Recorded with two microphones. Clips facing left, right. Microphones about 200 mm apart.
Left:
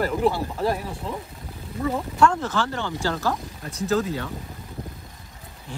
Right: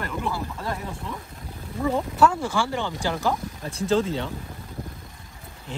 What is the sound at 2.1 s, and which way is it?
Speech, 10° right (ahead or behind).